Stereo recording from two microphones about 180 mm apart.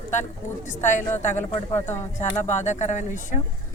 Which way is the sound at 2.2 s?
40° left (ahead or behind).